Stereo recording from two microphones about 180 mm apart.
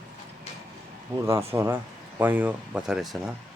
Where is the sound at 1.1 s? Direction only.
15° right (ahead or behind).